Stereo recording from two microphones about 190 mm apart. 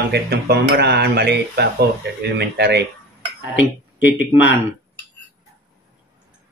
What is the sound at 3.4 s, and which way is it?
Speech, 10° right (ahead or behind).